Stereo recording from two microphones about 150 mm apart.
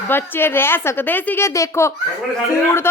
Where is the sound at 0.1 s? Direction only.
15° left (ahead or behind).